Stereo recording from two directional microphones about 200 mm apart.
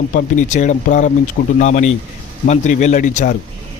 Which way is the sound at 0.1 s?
40° left (ahead or behind).